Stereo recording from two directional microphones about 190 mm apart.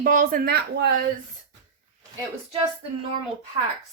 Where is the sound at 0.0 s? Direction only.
45° right (ahead or behind).